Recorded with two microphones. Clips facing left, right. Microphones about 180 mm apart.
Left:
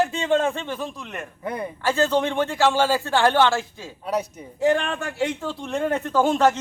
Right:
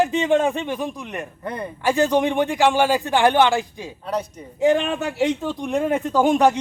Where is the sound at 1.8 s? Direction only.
15° right (ahead or behind).